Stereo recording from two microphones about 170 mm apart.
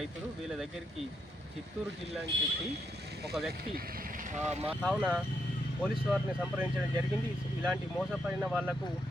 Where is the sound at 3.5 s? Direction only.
60° right (ahead or behind); by 4.7 s 40° right (ahead or behind).